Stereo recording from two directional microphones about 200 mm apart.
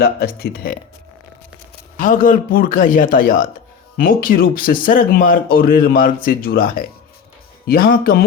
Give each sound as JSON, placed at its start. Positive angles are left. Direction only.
{"t": 0.0, "sound": "speech", "side_deg": 50}
{"t": 2.0, "sound": "speech", "side_deg": 40}